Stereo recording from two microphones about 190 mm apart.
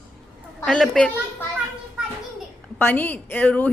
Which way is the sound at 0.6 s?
5° left (ahead or behind).